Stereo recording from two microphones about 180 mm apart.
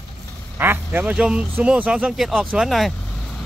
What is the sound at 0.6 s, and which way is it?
Speech, 10° right (ahead or behind).